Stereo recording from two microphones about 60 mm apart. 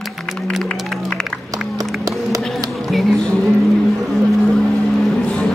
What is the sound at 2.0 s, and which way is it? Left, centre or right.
Run, right.